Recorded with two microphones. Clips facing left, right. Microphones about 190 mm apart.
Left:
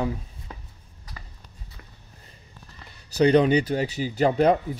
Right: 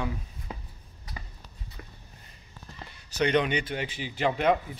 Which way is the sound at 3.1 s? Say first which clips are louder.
Left 7 dB; 35° left (ahead or behind).